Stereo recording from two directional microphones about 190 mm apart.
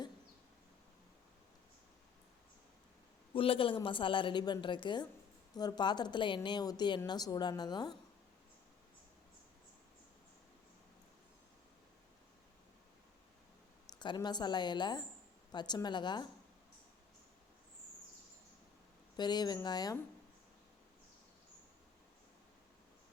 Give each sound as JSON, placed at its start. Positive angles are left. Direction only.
{"t": 3.3, "sound": "a woman's voice", "side_deg": 30}
{"t": 14.0, "sound": "a woman's voice", "side_deg": 25}
{"t": 19.1, "sound": "a woman's voice", "side_deg": 20}